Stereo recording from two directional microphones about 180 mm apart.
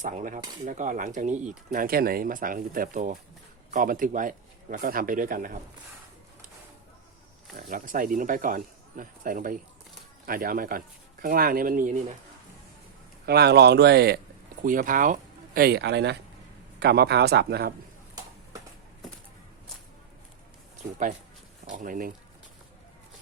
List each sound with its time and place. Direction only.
0.0 s speech: 45° right (ahead or behind)
7.5 s speech: 50° right (ahead or behind)
13.2 s speech: 65° right (ahead or behind)
14.6 s speech: 50° right (ahead or behind); by 17.7 s 65° right (ahead or behind)
21.7 s speech: 45° right (ahead or behind)